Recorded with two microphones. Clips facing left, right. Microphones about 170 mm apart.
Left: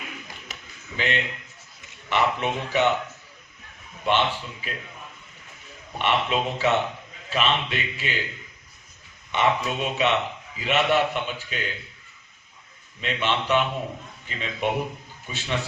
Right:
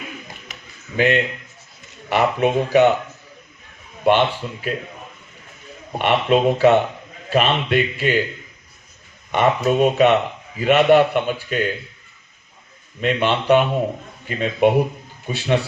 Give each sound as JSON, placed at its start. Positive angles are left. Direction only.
{"t": 0.9, "sound": "a man's voice", "side_deg": -50}
{"t": 4.0, "sound": "a man's voice", "side_deg": -50}
{"t": 5.9, "sound": "a man's voice", "side_deg": -50}
{"t": 9.3, "sound": "a man's voice", "side_deg": -50}
{"t": 13.0, "sound": "a man's voice", "side_deg": -50}